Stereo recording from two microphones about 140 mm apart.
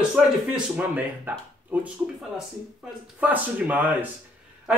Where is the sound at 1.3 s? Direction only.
15° right (ahead or behind).